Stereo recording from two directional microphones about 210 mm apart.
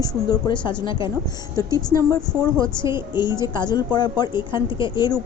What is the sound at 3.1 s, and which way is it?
A woman's voice, 20° left (ahead or behind).